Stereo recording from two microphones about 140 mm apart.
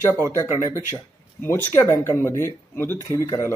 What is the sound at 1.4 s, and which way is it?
Speech, 15° left (ahead or behind).